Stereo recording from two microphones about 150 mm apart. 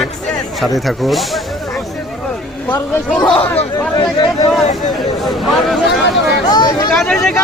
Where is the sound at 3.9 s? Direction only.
30° left (ahead or behind).